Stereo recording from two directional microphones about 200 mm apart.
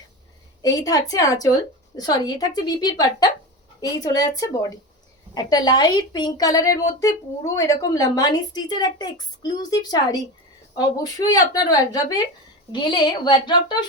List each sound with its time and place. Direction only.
0.6 s a woman's voice: 15° left (ahead or behind)